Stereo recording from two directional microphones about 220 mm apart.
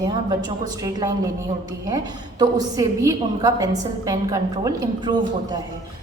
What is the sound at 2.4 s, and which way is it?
A woman's voice, 15° right (ahead or behind).